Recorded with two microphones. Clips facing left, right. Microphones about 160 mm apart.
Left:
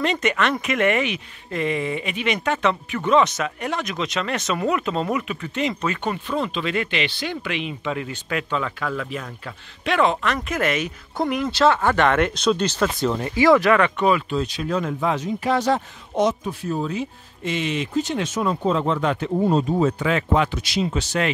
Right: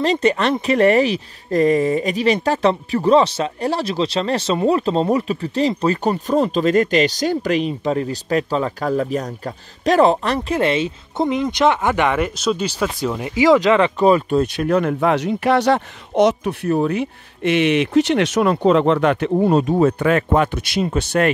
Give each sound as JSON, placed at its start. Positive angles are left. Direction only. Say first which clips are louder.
{"t": 0.0, "sound": "speech", "louder": "right 5 dB", "side_deg": -35}
{"t": 14.3, "sound": "speech", "louder": "right 7 dB", "side_deg": -55}
{"t": 20.0, "sound": "speech", "louder": "right 4 dB", "side_deg": -50}